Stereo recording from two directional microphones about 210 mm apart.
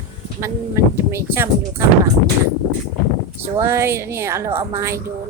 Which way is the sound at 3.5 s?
15° right (ahead or behind).